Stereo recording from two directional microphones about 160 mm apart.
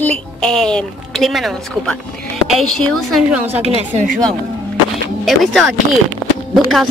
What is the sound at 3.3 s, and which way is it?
Speech, 10° right (ahead or behind).